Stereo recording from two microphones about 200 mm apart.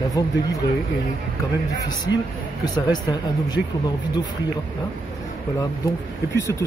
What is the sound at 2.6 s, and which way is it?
Speech, 20° left (ahead or behind).